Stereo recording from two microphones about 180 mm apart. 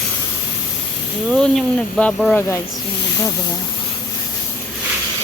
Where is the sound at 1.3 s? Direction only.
5° left (ahead or behind).